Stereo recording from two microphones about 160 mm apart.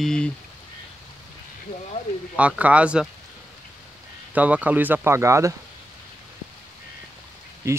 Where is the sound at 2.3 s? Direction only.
10° right (ahead or behind).